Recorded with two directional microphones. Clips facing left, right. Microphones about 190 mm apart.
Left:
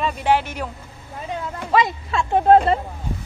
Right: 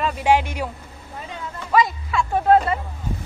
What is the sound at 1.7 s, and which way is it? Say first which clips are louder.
Speech: even; 25° left (ahead or behind).